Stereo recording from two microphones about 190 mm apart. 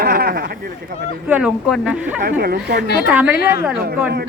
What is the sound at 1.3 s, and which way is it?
Speech, 5° right (ahead or behind).